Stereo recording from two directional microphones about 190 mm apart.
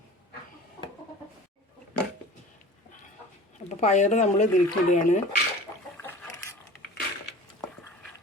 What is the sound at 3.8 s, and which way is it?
Speech, 40° left (ahead or behind).